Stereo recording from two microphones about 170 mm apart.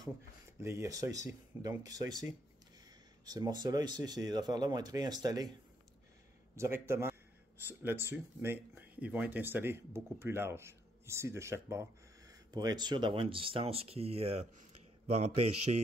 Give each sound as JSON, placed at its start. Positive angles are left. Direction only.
{"t": 0.6, "sound": "speech", "side_deg": -15}
{"t": 3.3, "sound": "speech", "side_deg": -25}
{"t": 6.5, "sound": "a man's voice", "side_deg": -15}